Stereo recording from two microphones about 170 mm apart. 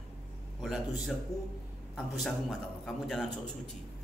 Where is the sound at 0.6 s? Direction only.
Centre (ahead or behind).